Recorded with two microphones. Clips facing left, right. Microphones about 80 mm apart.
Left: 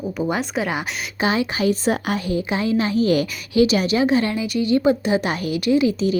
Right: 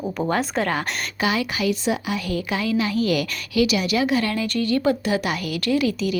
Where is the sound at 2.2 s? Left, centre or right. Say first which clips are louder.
Left 3 dB; left.